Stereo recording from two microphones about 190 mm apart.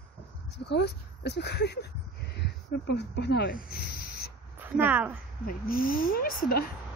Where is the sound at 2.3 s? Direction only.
60° left (ahead or behind).